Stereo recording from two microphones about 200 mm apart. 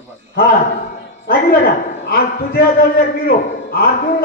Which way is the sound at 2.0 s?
50° left (ahead or behind).